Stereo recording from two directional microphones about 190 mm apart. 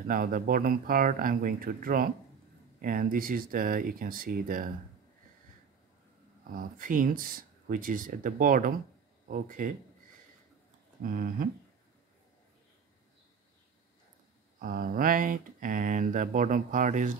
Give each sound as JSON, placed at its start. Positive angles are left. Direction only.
{"t": 0.0, "sound": "speech", "side_deg": -50}
{"t": 6.5, "sound": "speech", "side_deg": -45}
{"t": 11.0, "sound": "speech", "side_deg": -50}
{"t": 14.6, "sound": "speech", "side_deg": -45}